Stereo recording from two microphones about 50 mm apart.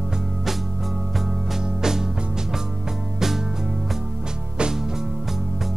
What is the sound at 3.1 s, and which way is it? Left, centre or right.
Music, centre.